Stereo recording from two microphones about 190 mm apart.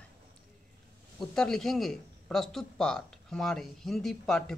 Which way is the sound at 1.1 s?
5° left (ahead or behind).